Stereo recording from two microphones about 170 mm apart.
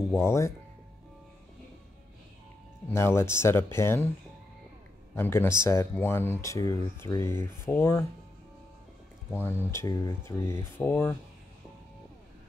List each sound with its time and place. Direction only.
0.1 s speech: 15° left (ahead or behind)
2.9 s speech: 15° left (ahead or behind)
5.1 s speech: 15° left (ahead or behind)
9.7 s speech: 20° left (ahead or behind)